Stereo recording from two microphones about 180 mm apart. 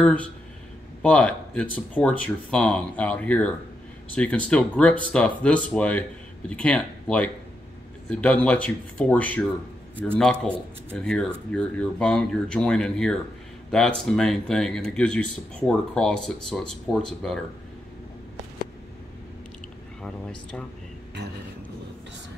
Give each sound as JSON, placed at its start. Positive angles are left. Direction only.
{"t": 0.0, "sound": "speech", "side_deg": 5}
{"t": 20.0, "sound": "speech", "side_deg": 5}